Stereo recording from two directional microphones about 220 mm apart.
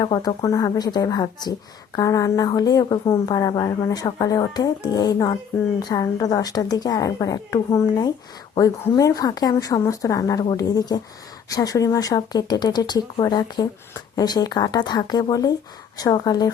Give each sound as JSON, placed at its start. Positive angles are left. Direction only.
{"t": 0.0, "sound": "a woman's voice", "side_deg": 20}